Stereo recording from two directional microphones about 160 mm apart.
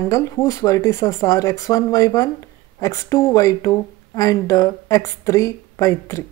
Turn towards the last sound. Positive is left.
turn(degrees=20)  # may be behind; listen again after turning